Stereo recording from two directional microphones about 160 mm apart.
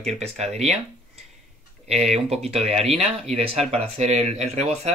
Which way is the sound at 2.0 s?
Centre (ahead or behind).